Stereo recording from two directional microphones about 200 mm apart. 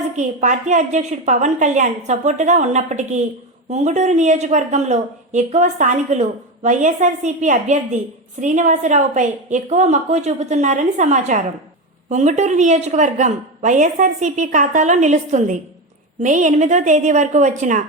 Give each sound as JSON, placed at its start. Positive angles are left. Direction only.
{"t": 0.2, "sound": "a woman's voice", "side_deg": -40}